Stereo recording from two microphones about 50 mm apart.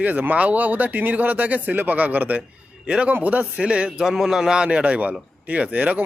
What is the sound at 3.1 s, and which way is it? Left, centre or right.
Speech, right.